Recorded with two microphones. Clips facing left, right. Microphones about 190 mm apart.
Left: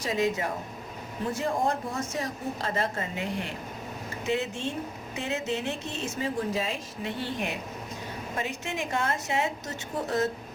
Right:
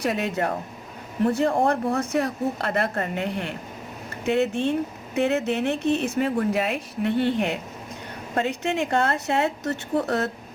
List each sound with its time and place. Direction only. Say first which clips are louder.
0.0 s speech: right 3 dB; 65° right (ahead or behind)